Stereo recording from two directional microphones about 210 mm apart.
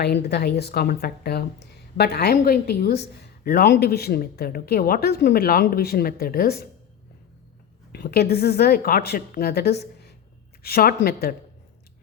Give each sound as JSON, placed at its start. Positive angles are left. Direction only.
{"t": 0.0, "sound": "a woman's voice", "side_deg": 50}
{"t": 7.9, "sound": "a woman's voice", "side_deg": 50}